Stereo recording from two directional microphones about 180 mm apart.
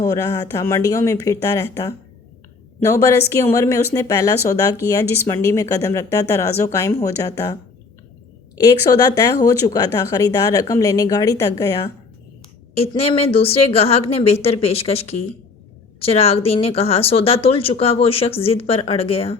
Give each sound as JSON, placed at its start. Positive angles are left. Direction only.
{"t": 0.0, "sound": "speech", "side_deg": 15}
{"t": 9.4, "sound": "speech", "side_deg": 20}
{"t": 12.7, "sound": "speech", "side_deg": 35}